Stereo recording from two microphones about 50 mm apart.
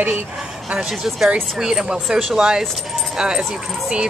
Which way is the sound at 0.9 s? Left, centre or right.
Centre.